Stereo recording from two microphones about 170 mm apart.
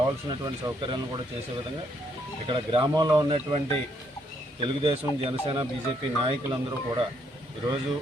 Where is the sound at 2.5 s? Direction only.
30° right (ahead or behind).